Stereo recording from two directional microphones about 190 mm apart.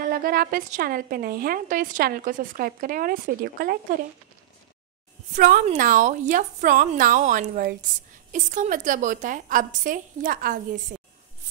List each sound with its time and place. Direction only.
0.1 s a woman's voice: 50° right (ahead or behind)
5.3 s a woman's voice: 45° right (ahead or behind)